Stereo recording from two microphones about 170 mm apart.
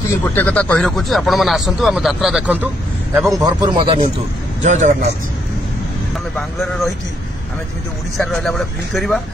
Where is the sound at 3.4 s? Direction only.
25° right (ahead or behind).